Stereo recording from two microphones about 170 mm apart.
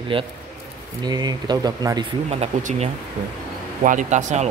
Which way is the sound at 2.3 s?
40° right (ahead or behind).